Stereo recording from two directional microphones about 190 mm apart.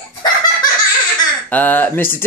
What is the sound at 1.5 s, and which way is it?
Speech, 10° left (ahead or behind).